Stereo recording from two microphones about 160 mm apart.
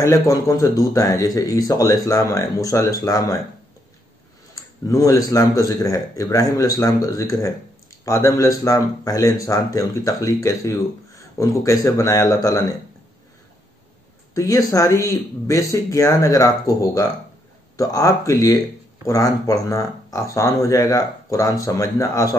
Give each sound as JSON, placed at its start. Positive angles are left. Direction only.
{"t": 0.0, "sound": "speech", "side_deg": 20}
{"t": 4.8, "sound": "speech", "side_deg": 20}
{"t": 14.3, "sound": "speech", "side_deg": 20}